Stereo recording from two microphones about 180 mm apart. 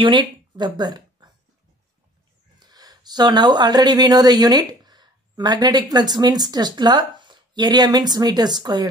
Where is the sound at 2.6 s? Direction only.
20° right (ahead or behind).